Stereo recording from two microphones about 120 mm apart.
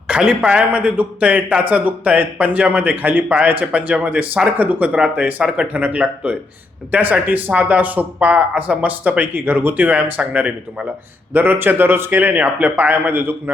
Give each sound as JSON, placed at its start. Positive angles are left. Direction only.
{"t": 0.1, "sound": "a man's voice", "side_deg": -5}